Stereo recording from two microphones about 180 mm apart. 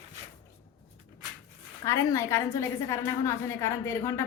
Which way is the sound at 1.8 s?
15° left (ahead or behind).